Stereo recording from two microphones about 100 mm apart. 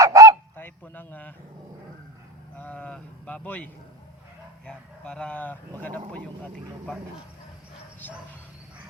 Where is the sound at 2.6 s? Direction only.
15° left (ahead or behind).